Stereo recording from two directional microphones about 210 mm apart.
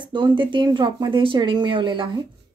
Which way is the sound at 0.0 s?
20° right (ahead or behind).